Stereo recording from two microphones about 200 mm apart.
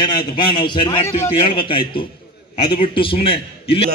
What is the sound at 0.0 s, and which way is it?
A man's voice, 20° left (ahead or behind).